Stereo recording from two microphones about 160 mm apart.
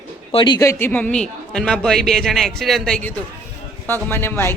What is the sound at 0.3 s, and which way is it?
A man's voice, 30° left (ahead or behind).